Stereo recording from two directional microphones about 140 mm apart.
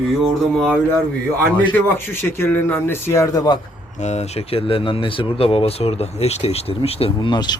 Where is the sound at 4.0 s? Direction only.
55° left (ahead or behind).